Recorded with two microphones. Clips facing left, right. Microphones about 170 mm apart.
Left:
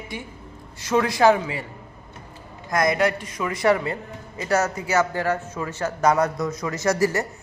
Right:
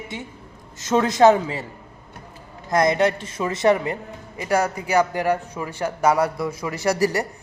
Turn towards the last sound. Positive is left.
turn(degrees=-15)  # may be behind; listen again after turning